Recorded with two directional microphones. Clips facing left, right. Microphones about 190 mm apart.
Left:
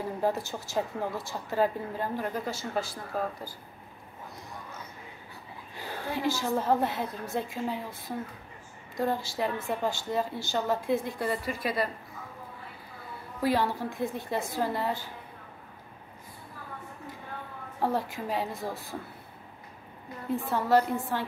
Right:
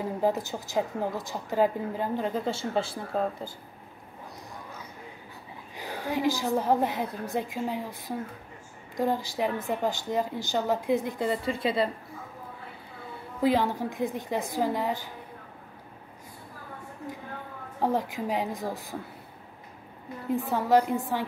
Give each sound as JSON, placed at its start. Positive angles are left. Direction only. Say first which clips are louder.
{"t": 0.0, "sound": "a woman's voice", "louder": "right 2 dB", "side_deg": -15}
{"t": 5.8, "sound": "a woman's voice", "louder": "right 3 dB", "side_deg": -15}
{"t": 13.4, "sound": "a woman's voice", "louder": "right 3 dB", "side_deg": -20}
{"t": 17.7, "sound": "a woman's voice", "louder": "right 2 dB", "side_deg": -15}
{"t": 20.3, "sound": "a woman's voice", "louder": "right 2 dB", "side_deg": -15}